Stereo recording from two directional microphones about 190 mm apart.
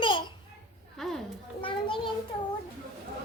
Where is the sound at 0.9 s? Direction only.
Centre (ahead or behind).